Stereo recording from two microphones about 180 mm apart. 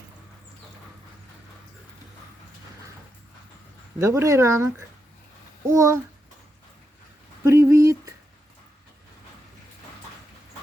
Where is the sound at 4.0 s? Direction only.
15° right (ahead or behind).